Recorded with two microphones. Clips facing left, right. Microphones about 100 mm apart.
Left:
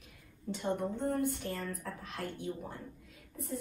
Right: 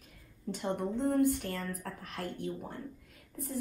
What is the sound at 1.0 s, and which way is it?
Speech, 60° right (ahead or behind).